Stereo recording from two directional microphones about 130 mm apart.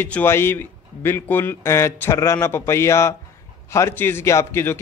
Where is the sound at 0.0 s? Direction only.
15° left (ahead or behind).